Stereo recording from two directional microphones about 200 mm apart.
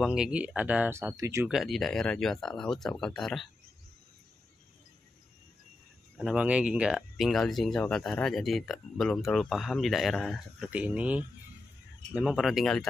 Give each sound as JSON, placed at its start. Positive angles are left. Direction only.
{"t": 0.0, "sound": "speech", "side_deg": -5}
{"t": 1.5, "sound": "speech", "side_deg": 0}
{"t": 6.1, "sound": "speech", "side_deg": -5}